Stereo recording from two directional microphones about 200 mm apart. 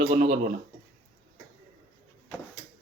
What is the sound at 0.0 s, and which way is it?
Speech, 40° right (ahead or behind).